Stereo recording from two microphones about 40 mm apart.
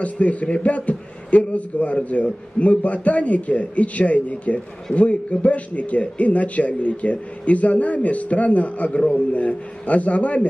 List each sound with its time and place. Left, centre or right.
0.0 s speech: left